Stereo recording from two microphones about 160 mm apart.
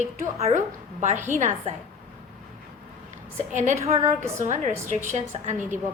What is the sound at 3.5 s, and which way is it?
A woman's voice, 50° right (ahead or behind).